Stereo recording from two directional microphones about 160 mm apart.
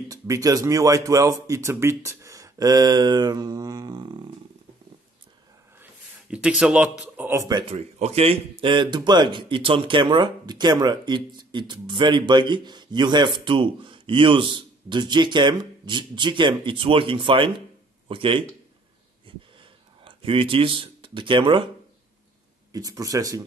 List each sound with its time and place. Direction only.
0.1 s a man's voice: 20° right (ahead or behind)
5.8 s a man's voice: 5° right (ahead or behind); by 7.6 s 20° right (ahead or behind)
7.7 s a man's voice: 40° right (ahead or behind)
20.1 s speech: 35° right (ahead or behind)
22.7 s a man's voice: 20° right (ahead or behind)